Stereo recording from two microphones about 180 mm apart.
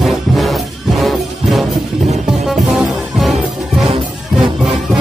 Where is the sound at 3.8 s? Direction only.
30° right (ahead or behind).